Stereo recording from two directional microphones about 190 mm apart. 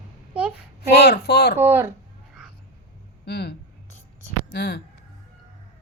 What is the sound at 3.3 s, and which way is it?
Speech, 60° left (ahead or behind).